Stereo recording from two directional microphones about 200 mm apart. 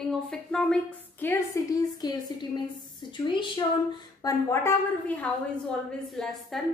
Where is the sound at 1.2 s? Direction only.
15° left (ahead or behind).